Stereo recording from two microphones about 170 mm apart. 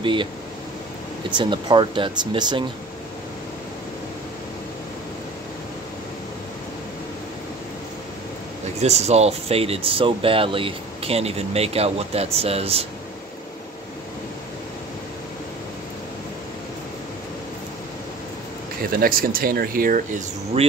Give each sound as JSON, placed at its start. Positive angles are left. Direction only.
{"t": 0.0, "sound": "speech", "side_deg": -30}
{"t": 1.3, "sound": "speech", "side_deg": -25}
{"t": 8.8, "sound": "speech", "side_deg": -40}
{"t": 18.9, "sound": "speech", "side_deg": -60}
{"t": 20.5, "sound": "speech", "side_deg": -35}